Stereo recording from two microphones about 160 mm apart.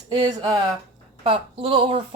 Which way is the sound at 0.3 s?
30° right (ahead or behind).